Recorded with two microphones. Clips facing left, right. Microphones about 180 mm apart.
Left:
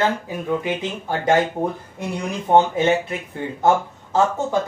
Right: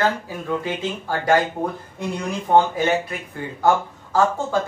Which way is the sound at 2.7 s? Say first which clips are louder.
Left 2 dB; 25° left (ahead or behind).